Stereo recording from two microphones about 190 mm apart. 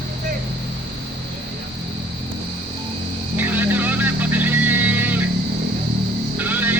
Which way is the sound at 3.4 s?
10° right (ahead or behind).